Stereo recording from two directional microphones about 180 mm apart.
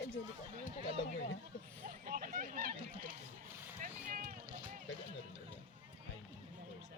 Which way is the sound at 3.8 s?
50° right (ahead or behind).